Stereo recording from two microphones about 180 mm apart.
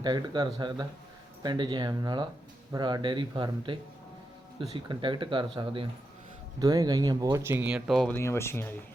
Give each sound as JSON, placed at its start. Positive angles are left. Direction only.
{"t": 0.0, "sound": "speech", "side_deg": -25}
{"t": 8.1, "sound": "speech", "side_deg": 15}